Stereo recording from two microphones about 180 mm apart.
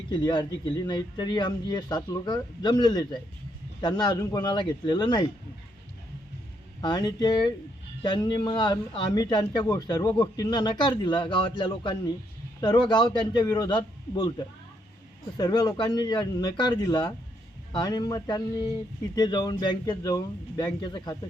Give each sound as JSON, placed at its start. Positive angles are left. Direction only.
{"t": 0.1, "sound": "a man's voice", "side_deg": 25}
{"t": 6.8, "sound": "a man's voice", "side_deg": 25}